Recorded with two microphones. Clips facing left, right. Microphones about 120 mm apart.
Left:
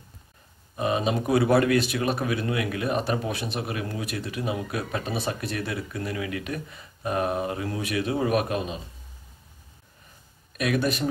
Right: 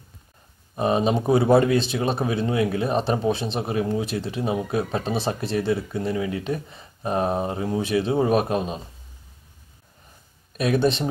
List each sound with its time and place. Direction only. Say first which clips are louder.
0.7 s speech: right 4 dB; 35° right (ahead or behind)
1.1 s speech: right 3 dB; 25° right (ahead or behind)
10.6 s speech: right 4 dB; 30° right (ahead or behind)